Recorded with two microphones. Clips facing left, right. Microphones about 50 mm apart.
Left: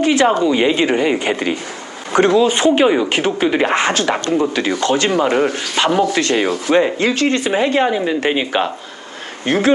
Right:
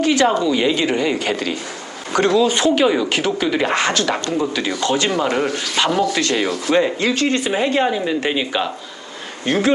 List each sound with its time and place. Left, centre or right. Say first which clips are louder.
0.0 s speech: left 2 dB; left
5.0 s speech: left 4 dB; centre
5.8 s speech: left 3 dB; left
6.3 s speech: left 3 dB; centre
7.0 s speech: left 2 dB; left
7.8 s speech: left 2 dB; centre
9.5 s speech: left 2 dB; left